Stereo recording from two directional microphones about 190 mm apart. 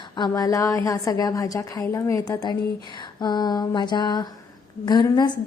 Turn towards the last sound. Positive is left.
turn(degrees=20)  # may be behind; listen again after turning